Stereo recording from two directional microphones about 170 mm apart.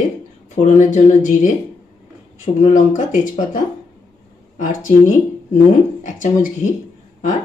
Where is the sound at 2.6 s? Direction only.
45° left (ahead or behind).